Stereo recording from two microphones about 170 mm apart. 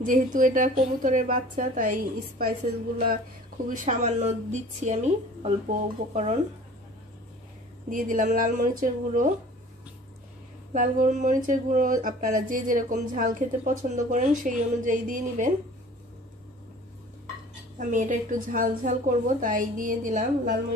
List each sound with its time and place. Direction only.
0.0 s a woman's voice: 50° right (ahead or behind)
3.6 s a woman's voice: 50° right (ahead or behind)
7.9 s a woman's voice: 50° right (ahead or behind)
10.7 s a woman's voice: 50° right (ahead or behind)
17.7 s a woman's voice: 50° right (ahead or behind)